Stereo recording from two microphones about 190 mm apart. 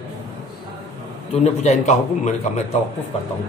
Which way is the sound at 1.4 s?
35° left (ahead or behind).